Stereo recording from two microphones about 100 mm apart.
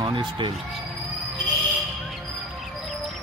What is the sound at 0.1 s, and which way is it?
Speech, 55° right (ahead or behind).